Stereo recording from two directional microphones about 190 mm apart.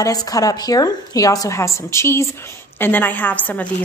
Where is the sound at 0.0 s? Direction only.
20° left (ahead or behind).